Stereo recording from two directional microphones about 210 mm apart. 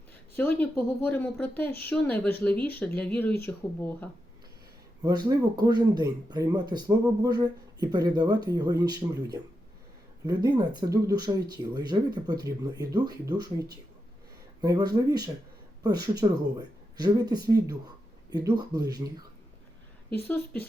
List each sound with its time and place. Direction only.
0.3 s a woman's voice: 5° left (ahead or behind)
5.0 s speech: 15° right (ahead or behind)
20.2 s a woman's voice: 10° left (ahead or behind)